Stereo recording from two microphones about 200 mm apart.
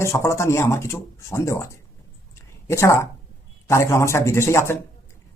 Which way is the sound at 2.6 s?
15° left (ahead or behind).